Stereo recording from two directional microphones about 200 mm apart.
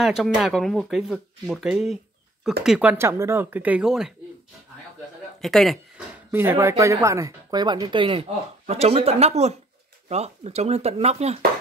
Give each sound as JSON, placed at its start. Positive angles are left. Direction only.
{"t": 0.0, "sound": "speech", "side_deg": 0}
{"t": 5.4, "sound": "speech", "side_deg": 0}
{"t": 6.3, "sound": "speech", "side_deg": -10}